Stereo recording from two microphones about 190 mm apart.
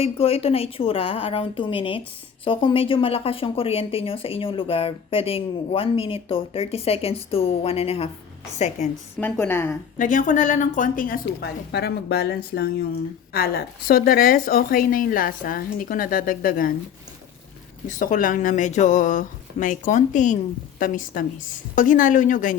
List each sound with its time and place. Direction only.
0.0 s a woman's voice: 30° left (ahead or behind)
9.2 s a woman's voice: 10° left (ahead or behind)
10.0 s a woman's voice: 45° left (ahead or behind)
17.8 s a woman's voice: 45° left (ahead or behind)